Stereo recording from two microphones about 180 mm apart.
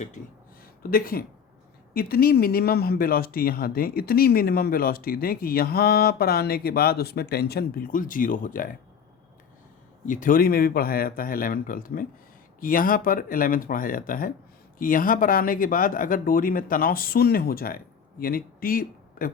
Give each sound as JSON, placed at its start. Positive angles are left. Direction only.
{"t": 0.8, "sound": "speech", "side_deg": 55}
{"t": 10.1, "sound": "speech", "side_deg": 50}